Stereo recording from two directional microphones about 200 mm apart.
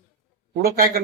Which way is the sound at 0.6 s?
50° right (ahead or behind).